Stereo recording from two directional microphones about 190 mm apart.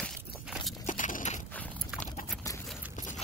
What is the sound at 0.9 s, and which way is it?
Biting, 45° left (ahead or behind).